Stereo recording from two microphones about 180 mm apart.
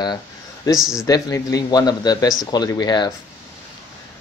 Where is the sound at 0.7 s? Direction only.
Centre (ahead or behind).